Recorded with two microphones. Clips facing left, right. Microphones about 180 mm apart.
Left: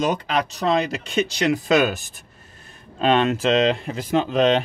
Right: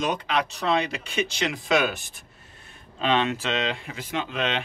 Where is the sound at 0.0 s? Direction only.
40° left (ahead or behind).